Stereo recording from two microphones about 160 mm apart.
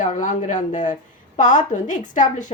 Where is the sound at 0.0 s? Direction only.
50° left (ahead or behind).